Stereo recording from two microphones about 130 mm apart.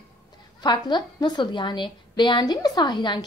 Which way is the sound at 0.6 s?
35° left (ahead or behind).